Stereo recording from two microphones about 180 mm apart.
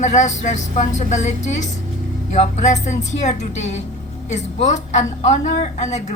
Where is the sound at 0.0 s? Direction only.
40° left (ahead or behind).